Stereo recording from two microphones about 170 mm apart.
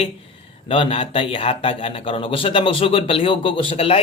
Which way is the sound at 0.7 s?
30° left (ahead or behind).